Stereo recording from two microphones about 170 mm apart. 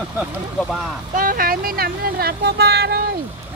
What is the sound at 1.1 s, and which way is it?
Speech, 55° right (ahead or behind).